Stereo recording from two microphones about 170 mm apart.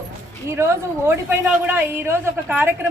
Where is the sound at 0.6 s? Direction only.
15° right (ahead or behind).